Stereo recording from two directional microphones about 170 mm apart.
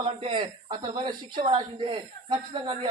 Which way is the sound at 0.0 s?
35° right (ahead or behind).